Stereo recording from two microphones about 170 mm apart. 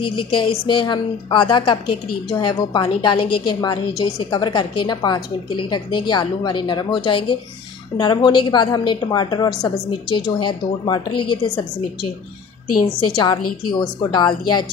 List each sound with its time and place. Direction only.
0.0 s a woman's voice: 30° left (ahead or behind)
13.1 s a woman's voice: 25° left (ahead or behind)